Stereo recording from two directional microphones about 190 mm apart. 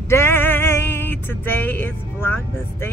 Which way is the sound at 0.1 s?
15° left (ahead or behind).